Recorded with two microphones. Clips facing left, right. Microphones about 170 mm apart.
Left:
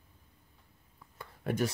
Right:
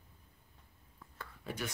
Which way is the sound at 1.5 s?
60° left (ahead or behind).